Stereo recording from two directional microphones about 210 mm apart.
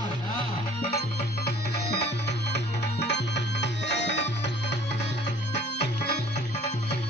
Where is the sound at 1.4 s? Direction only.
50° left (ahead or behind).